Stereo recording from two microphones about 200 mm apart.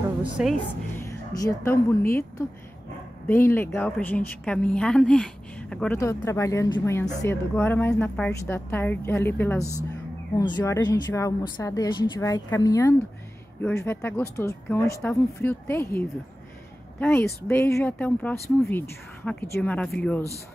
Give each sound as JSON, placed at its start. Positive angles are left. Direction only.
{"t": 0.2, "sound": "a woman's voice", "side_deg": -5}
{"t": 0.9, "sound": "a woman's voice", "side_deg": 15}
{"t": 9.6, "sound": "speech", "side_deg": -15}
{"t": 10.3, "sound": "a woman's voice", "side_deg": 20}
{"t": 17.5, "sound": "a woman's voice", "side_deg": 15}